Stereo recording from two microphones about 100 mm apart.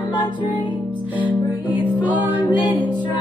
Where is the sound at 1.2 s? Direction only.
15° right (ahead or behind).